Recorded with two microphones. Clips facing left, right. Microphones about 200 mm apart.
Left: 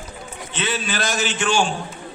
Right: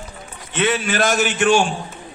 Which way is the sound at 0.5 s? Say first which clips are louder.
Right 6 dB; 60° right (ahead or behind).